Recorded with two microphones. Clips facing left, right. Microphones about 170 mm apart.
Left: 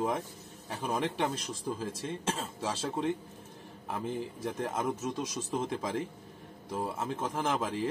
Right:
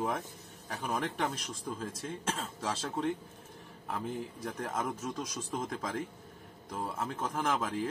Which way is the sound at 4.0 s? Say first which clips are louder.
Left 2 dB; 25° left (ahead or behind).